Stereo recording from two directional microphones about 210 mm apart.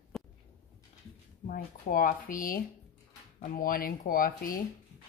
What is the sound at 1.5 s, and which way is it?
Speech, 40° left (ahead or behind).